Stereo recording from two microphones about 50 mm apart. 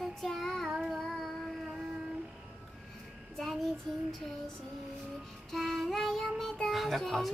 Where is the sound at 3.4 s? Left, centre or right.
Centre.